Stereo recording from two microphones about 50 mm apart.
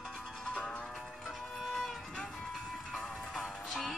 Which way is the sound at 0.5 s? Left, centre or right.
Centre.